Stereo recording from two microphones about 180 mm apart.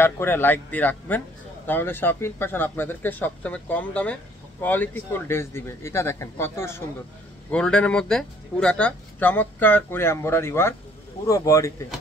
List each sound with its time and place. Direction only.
0.0 s speech: 10° left (ahead or behind)